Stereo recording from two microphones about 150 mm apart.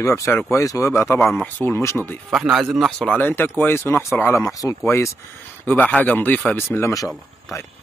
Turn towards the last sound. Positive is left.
turn(degrees=20)  # may be behind; listen again after turning